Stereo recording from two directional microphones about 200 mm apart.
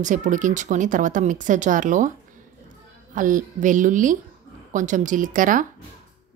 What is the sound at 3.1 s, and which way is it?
Speech, 40° right (ahead or behind).